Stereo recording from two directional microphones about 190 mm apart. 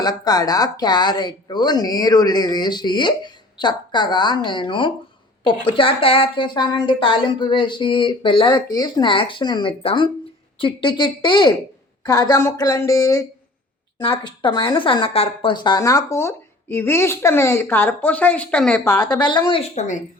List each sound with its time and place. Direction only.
0.0 s speech: 20° left (ahead or behind)
19.2 s speech: 25° left (ahead or behind)